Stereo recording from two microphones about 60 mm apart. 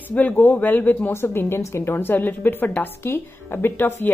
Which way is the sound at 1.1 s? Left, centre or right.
Left.